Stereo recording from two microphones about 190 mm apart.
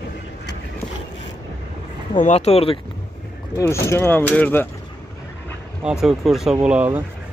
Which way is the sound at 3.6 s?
15° left (ahead or behind).